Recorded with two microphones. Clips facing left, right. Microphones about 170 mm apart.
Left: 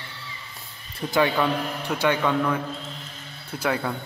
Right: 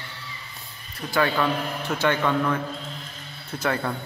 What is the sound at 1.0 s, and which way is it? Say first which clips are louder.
Speech: left 1 dB; 20° left (ahead or behind).